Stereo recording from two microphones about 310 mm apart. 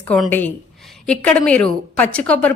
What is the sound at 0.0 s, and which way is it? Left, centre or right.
A woman's voice, centre.